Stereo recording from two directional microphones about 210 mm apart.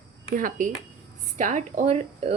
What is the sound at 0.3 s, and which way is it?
Speech, 40° right (ahead or behind).